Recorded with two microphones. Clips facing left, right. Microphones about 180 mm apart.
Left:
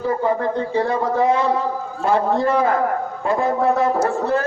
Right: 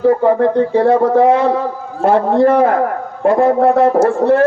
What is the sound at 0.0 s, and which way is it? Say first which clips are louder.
A man's voice: right 9 dB; 60° right (ahead or behind).